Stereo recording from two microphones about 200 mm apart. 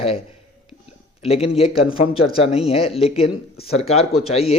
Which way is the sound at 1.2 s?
30° left (ahead or behind).